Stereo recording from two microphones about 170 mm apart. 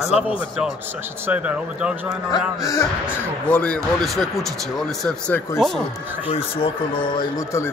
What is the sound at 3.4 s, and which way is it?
Speech, 5° left (ahead or behind).